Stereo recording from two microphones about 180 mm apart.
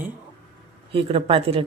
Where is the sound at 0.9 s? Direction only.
30° right (ahead or behind).